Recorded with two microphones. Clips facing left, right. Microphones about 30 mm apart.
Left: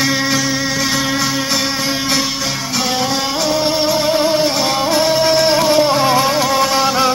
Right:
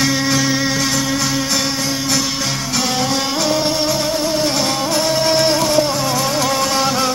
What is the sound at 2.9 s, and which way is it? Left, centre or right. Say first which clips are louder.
Music: left 1 dB; centre.